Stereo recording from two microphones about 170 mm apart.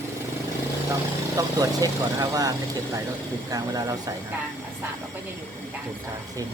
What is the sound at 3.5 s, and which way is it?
Speech, 20° right (ahead or behind).